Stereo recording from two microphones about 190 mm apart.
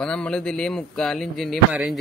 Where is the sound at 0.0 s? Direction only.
5° left (ahead or behind).